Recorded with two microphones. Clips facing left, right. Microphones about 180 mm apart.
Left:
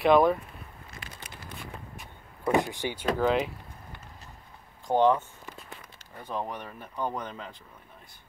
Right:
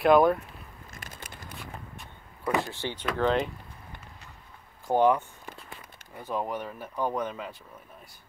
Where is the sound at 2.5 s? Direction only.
15° left (ahead or behind).